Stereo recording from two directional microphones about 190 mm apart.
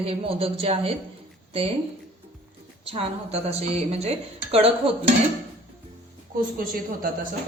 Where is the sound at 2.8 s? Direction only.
30° right (ahead or behind).